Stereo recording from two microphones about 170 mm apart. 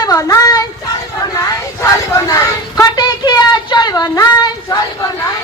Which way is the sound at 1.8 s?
20° left (ahead or behind).